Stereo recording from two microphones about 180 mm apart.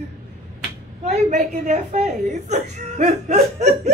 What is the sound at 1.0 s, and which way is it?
A woman's voice, 40° right (ahead or behind).